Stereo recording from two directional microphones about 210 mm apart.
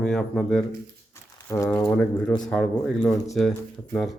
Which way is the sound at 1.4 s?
15° left (ahead or behind).